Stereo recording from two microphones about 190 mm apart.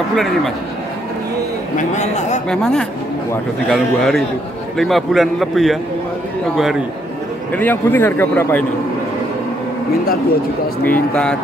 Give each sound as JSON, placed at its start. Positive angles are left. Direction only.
{"t": 1.8, "sound": "a man's voice", "side_deg": 40}
{"t": 2.5, "sound": "a man's voice", "side_deg": 5}
{"t": 7.5, "sound": "a man's voice", "side_deg": 10}
{"t": 10.8, "sound": "a man's voice", "side_deg": 5}